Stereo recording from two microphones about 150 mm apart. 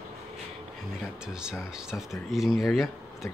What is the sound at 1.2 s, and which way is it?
Speech, 5° right (ahead or behind).